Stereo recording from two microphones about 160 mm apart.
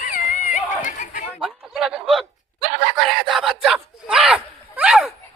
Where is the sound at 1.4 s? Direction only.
5° right (ahead or behind).